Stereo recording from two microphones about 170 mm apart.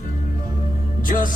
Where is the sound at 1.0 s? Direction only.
50° left (ahead or behind).